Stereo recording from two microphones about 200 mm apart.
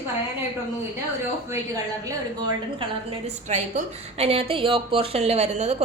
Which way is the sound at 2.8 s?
35° right (ahead or behind).